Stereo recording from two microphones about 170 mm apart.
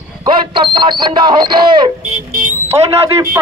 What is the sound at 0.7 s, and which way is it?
A man's voice, 25° right (ahead or behind).